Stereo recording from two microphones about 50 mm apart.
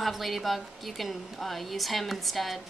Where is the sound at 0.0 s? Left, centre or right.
Centre.